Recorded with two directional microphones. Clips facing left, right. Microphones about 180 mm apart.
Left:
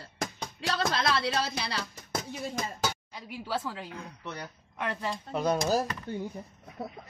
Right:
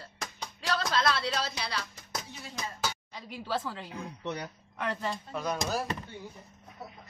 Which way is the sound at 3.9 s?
15° right (ahead or behind).